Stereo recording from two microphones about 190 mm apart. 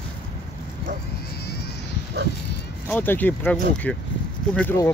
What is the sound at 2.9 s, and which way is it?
Speech, 10° left (ahead or behind).